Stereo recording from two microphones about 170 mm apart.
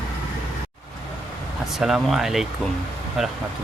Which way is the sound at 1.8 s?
Centre (ahead or behind).